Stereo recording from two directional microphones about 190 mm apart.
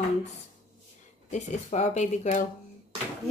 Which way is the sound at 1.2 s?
40° left (ahead or behind).